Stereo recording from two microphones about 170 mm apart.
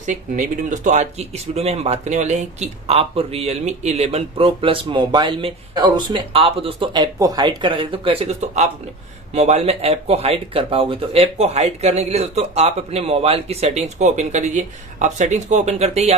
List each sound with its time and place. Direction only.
0.0 s speech: 45° right (ahead or behind)